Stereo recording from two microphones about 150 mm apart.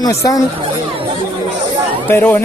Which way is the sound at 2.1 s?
15° left (ahead or behind).